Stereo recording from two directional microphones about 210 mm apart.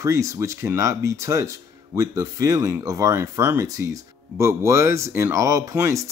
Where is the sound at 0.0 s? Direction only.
15° right (ahead or behind).